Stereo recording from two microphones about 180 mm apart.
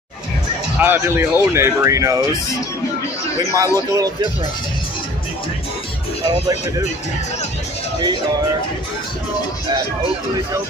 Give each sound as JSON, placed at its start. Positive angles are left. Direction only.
{"t": 0.7, "sound": "speech", "side_deg": -10}
{"t": 3.5, "sound": "a man's voice", "side_deg": -20}